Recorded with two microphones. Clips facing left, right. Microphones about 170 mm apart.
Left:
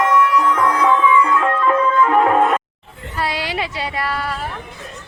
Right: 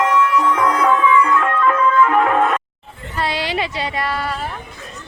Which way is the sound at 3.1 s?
10° left (ahead or behind).